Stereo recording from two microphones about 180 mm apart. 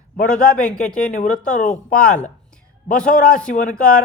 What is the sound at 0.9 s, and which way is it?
A man's voice, 50° left (ahead or behind).